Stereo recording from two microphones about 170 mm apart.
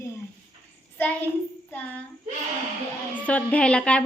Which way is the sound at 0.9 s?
10° left (ahead or behind).